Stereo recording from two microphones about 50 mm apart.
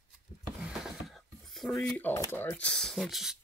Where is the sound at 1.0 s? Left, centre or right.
Centre.